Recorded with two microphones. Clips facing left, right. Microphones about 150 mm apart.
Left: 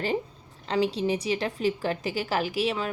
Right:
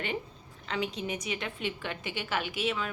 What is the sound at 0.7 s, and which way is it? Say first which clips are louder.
Speech: left 8 dB; 35° left (ahead or behind).